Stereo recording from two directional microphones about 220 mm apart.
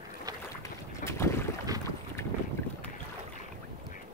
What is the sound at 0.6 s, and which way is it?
Boat, 10° left (ahead or behind).